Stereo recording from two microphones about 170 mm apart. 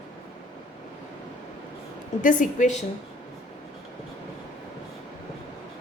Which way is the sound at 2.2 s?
50° left (ahead or behind).